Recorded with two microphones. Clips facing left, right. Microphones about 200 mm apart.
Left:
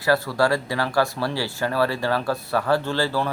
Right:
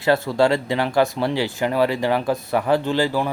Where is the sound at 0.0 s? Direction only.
25° right (ahead or behind).